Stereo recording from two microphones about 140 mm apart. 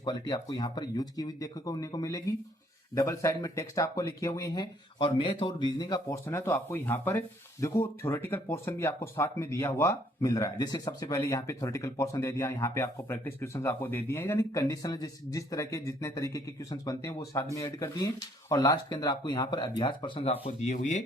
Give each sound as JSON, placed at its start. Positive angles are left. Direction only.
{"t": 0.0, "sound": "speech", "side_deg": 30}
{"t": 6.2, "sound": "speech", "side_deg": 15}